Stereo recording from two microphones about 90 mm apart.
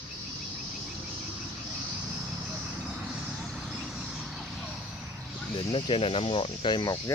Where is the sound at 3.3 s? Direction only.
Centre (ahead or behind).